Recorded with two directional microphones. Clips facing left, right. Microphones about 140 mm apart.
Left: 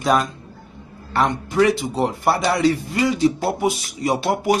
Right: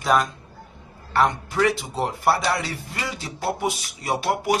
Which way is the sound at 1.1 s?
5° right (ahead or behind).